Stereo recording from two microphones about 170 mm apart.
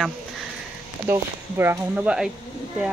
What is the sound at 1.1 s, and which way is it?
Speech, 15° right (ahead or behind).